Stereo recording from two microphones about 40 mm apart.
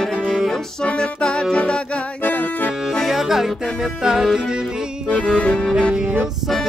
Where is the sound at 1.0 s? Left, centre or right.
Left.